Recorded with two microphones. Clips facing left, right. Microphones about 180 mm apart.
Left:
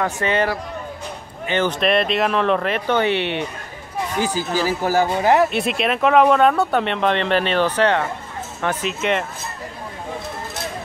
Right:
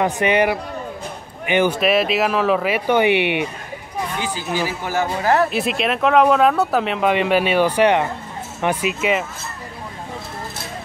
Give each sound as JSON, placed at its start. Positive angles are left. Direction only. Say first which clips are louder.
{"t": 0.0, "sound": "speech", "louder": "right 3 dB", "side_deg": -15}
{"t": 4.2, "sound": "a man's voice", "louder": "left 4 dB", "side_deg": 40}
{"t": 5.2, "sound": "speech", "louder": "left 1 dB", "side_deg": 15}
{"t": 5.5, "sound": "speech", "louder": "even", "side_deg": 0}